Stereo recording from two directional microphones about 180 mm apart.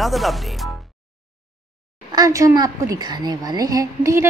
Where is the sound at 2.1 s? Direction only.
20° right (ahead or behind).